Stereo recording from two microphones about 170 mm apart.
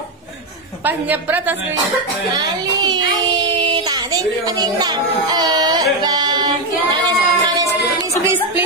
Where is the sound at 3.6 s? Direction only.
25° right (ahead or behind).